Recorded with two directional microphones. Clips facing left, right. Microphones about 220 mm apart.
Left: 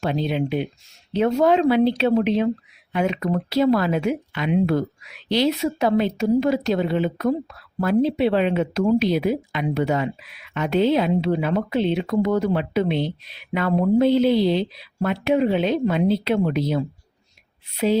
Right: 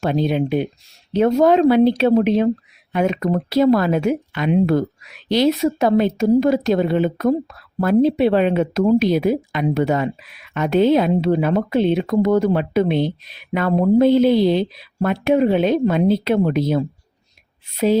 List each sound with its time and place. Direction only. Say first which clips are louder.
0.0 s speech: right 4 dB; 45° right (ahead or behind)